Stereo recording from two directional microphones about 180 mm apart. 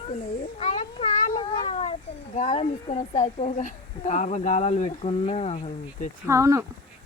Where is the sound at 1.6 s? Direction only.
35° left (ahead or behind).